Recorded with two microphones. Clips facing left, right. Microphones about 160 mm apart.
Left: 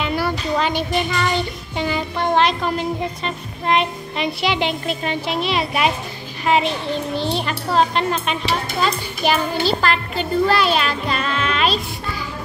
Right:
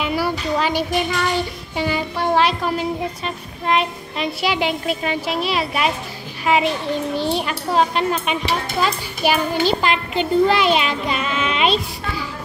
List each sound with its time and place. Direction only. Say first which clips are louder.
0.0 s child singing: even; 5° right (ahead or behind)
1.8 s a child's voice: even; 5° right (ahead or behind)